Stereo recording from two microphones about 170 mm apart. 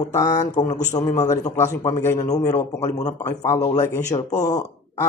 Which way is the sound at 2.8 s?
45° left (ahead or behind).